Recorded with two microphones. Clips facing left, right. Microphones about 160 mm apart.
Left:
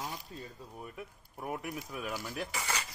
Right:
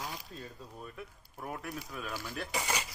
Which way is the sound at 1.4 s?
15° left (ahead or behind).